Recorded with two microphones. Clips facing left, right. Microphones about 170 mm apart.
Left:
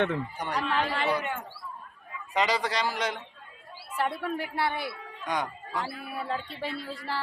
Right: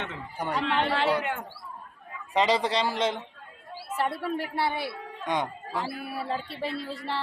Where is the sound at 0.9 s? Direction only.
75° right (ahead or behind).